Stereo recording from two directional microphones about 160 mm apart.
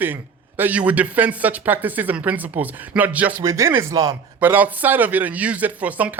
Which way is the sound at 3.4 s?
20° right (ahead or behind).